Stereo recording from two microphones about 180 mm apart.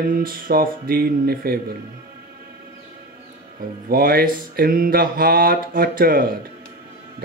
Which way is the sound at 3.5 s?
55° right (ahead or behind).